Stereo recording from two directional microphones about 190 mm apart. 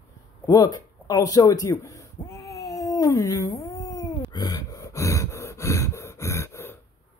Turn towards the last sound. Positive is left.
turn(degrees=15)  # may be behind; listen again after turning